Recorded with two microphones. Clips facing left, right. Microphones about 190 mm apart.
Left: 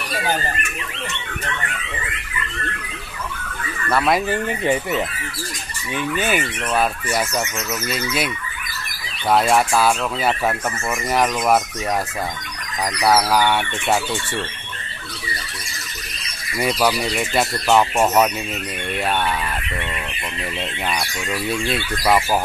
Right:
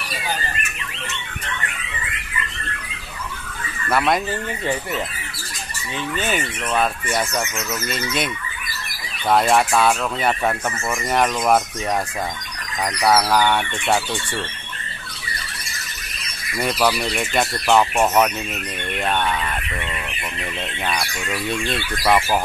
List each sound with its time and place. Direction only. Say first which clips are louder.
3.9 s speech: left 1 dB; centre (ahead or behind)
4.3 s speech: left 4 dB; 20° left (ahead or behind)
9.3 s speech: even; centre (ahead or behind)
12.8 s speech: even; 5° left (ahead or behind)
16.5 s speech: left 1 dB; centre (ahead or behind)
20.8 s speech: right 1 dB; centre (ahead or behind)